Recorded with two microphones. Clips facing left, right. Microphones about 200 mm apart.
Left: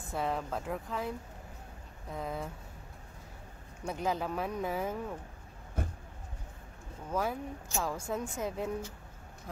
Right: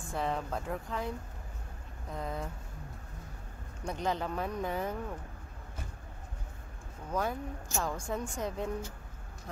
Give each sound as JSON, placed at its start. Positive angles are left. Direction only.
{"t": 0.1, "sound": "a woman's voice", "side_deg": 0}
{"t": 2.1, "sound": "a woman's voice", "side_deg": 5}
{"t": 3.8, "sound": "a woman's voice", "side_deg": 5}
{"t": 5.8, "sound": "a sound", "side_deg": 55}
{"t": 7.1, "sound": "a woman's voice", "side_deg": 5}